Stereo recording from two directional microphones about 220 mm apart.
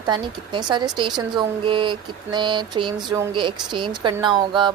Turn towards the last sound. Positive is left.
turn(degrees=-20)  # may be behind; listen again after turning